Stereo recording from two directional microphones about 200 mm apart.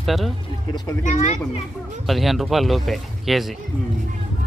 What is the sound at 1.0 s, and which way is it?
Speech, 35° left (ahead or behind).